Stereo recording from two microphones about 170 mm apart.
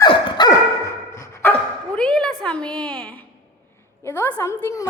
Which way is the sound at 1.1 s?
15° left (ahead or behind).